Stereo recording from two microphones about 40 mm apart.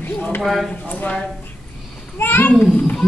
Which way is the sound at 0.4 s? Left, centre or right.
Centre.